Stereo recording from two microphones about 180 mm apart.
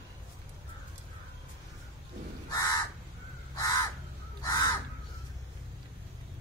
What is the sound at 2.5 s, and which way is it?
Crow, 20° left (ahead or behind).